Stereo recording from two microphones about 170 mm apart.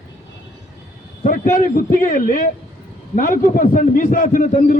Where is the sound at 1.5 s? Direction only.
55° left (ahead or behind).